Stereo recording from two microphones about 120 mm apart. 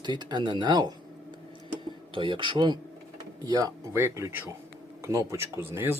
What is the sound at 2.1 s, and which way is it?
Speech, 45° right (ahead or behind).